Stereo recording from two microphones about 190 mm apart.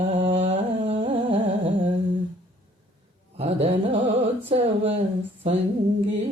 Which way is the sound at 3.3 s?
30° right (ahead or behind).